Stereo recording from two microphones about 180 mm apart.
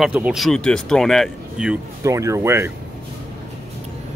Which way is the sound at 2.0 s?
15° right (ahead or behind).